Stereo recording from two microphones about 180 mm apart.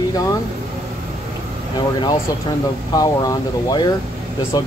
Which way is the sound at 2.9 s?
20° left (ahead or behind).